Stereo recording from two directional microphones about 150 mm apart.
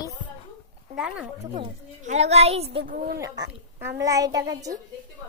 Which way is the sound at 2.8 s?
70° right (ahead or behind).